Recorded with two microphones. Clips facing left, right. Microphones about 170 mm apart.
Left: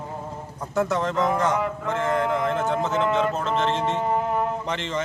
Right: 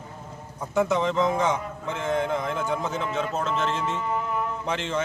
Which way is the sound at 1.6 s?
90° left.